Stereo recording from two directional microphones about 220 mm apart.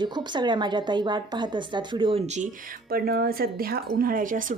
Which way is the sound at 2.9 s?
45° right (ahead or behind).